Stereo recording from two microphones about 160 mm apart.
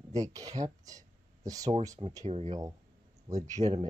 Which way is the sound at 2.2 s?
40° right (ahead or behind).